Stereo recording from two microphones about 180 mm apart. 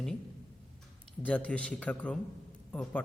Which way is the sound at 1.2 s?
5° left (ahead or behind).